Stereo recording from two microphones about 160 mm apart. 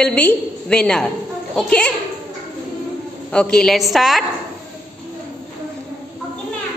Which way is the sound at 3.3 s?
5° left (ahead or behind).